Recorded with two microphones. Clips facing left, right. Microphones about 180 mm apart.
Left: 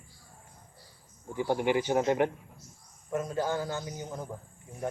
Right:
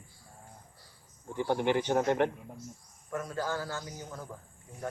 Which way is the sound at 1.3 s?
10° left (ahead or behind).